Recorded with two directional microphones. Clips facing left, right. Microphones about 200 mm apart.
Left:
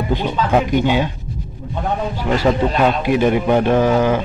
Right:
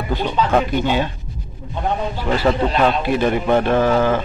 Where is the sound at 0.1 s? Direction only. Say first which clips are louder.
Even; 15° left (ahead or behind).